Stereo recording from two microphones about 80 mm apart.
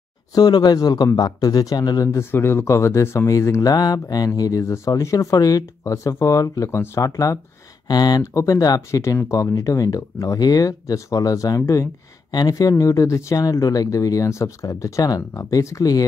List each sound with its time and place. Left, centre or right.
0.3 s speech: left
2.0 s speech: left
3.7 s speech: left
7.9 s speech: left
8.2 s speech: left